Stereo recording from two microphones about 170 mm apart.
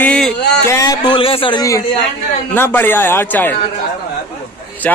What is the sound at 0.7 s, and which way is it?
A man's voice, 20° left (ahead or behind).